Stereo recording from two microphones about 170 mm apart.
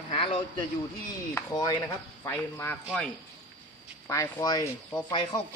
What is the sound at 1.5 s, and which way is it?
Speech, 25° left (ahead or behind).